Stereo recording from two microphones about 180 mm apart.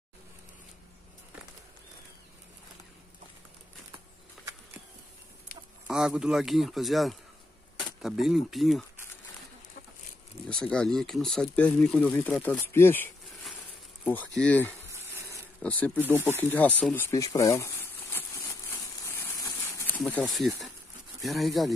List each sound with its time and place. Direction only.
5.9 s a man's voice: 5° right (ahead or behind)
10.5 s speech: 5° left (ahead or behind)
14.9 s frying: 15° right (ahead or behind)
15.6 s speech: 10° left (ahead or behind)
16.0 s speech: 10° right (ahead or behind)
16.3 s speech: 10° left (ahead or behind)
18.7 s a sound: 15° left (ahead or behind)
20.0 s a man's voice: 5° left (ahead or behind)